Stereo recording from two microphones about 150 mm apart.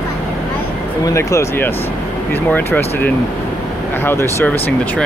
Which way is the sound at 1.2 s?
20° left (ahead or behind).